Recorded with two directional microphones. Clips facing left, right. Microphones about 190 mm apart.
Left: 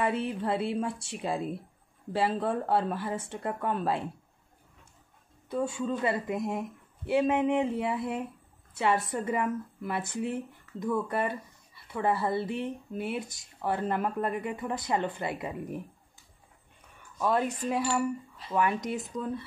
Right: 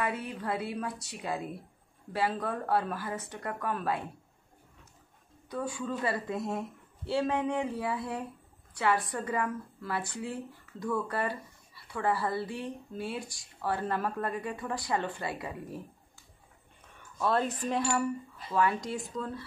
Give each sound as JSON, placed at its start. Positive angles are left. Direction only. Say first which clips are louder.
{"t": 0.0, "sound": "speech", "louder": "left 5 dB", "side_deg": 25}
{"t": 5.5, "sound": "speech", "louder": "left 4 dB", "side_deg": 25}
{"t": 17.2, "sound": "cutlery", "louder": "left 1 dB", "side_deg": 10}
{"t": 18.5, "sound": "speech", "louder": "left 1 dB", "side_deg": 20}